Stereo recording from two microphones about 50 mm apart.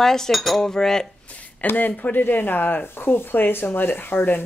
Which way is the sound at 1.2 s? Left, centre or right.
Left.